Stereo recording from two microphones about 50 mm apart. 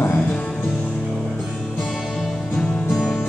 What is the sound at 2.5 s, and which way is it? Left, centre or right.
Music, centre.